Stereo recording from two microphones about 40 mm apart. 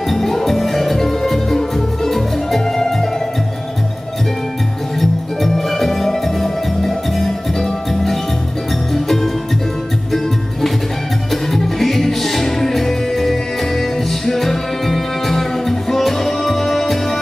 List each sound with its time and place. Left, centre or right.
0.1 s music: centre
5.4 s music: centre
11.5 s music: centre